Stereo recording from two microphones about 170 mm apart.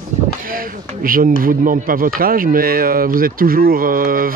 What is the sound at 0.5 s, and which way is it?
Speech, 55° right (ahead or behind).